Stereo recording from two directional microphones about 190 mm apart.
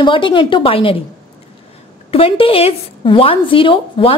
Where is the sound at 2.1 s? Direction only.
30° left (ahead or behind).